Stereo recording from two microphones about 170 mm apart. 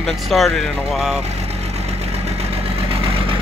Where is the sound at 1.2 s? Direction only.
40° right (ahead or behind).